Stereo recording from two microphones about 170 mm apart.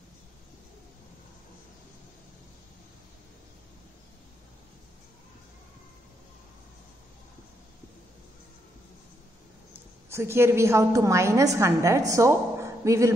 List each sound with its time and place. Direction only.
10.1 s a woman's voice: 15° right (ahead or behind)